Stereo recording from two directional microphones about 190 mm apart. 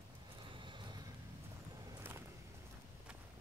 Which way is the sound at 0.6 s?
25° right (ahead or behind).